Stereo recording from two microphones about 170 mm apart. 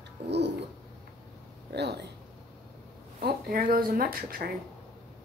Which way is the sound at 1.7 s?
80° right.